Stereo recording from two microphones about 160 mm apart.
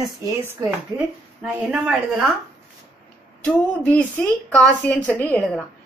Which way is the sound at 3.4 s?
10° left (ahead or behind).